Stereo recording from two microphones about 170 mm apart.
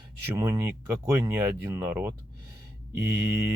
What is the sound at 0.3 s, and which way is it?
Speech, 15° right (ahead or behind).